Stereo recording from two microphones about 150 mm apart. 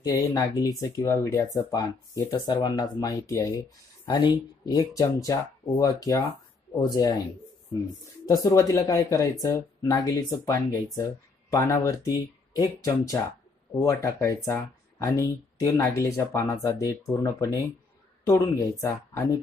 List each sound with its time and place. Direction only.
0.0 s speech: 25° left (ahead or behind)
8.3 s speech: 20° left (ahead or behind)